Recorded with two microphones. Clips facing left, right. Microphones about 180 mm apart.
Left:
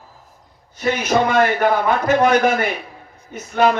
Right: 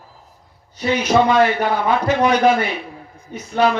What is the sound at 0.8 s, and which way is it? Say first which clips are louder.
A man's voice: right 2 dB; 50° left (ahead or behind).